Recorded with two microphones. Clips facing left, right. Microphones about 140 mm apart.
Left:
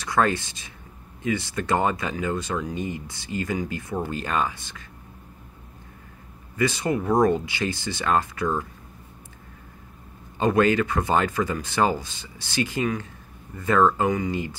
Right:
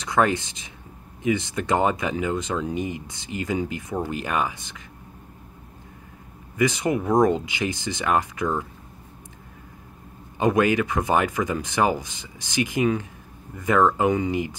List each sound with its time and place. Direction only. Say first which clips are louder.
0.0 s speech: right 1 dB; 20° right (ahead or behind)
6.5 s speech: right 2 dB; 15° right (ahead or behind)
10.4 s speech: even; 15° right (ahead or behind)